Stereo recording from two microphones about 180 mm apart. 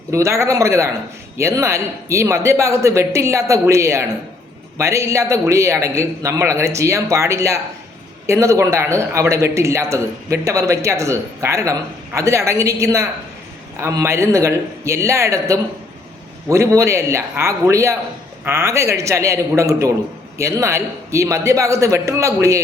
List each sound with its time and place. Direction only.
0.1 s a man's voice: 15° right (ahead or behind)